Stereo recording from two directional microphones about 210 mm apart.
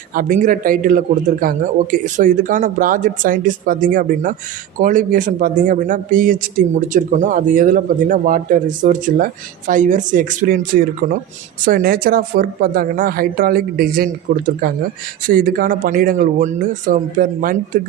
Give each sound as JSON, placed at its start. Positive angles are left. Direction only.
{"t": 0.1, "sound": "speech", "side_deg": -40}